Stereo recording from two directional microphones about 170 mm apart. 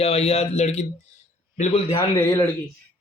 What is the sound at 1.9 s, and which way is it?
Speech, 15° left (ahead or behind).